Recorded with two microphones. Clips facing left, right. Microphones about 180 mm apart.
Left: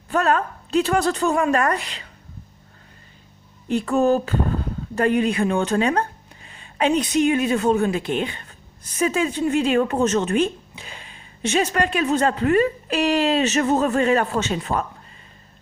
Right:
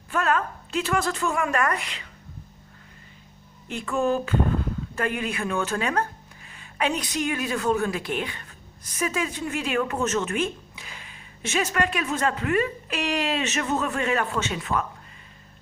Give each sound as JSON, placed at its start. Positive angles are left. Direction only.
{"t": 0.1, "sound": "a woman's voice", "side_deg": 35}
{"t": 3.7, "sound": "speech", "side_deg": 40}